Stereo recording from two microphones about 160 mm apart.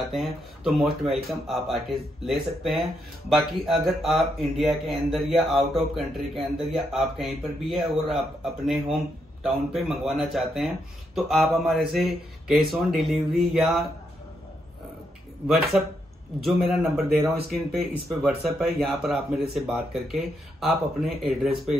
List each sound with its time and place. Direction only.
0.1 s speech: centre (ahead or behind)
9.4 s speech: centre (ahead or behind)
15.4 s speech: centre (ahead or behind)